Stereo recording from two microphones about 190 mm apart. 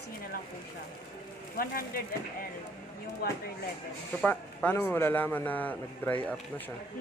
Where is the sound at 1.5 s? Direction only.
50° left (ahead or behind).